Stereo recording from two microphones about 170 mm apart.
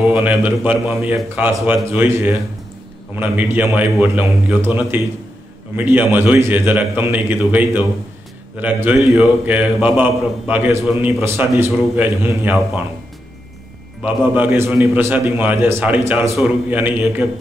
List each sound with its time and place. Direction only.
0.0 s a man's voice: 10° right (ahead or behind)
14.0 s a man's voice: 10° right (ahead or behind)